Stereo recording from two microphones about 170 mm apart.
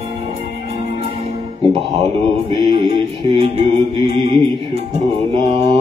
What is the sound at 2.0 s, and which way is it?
Music, 35° right (ahead or behind).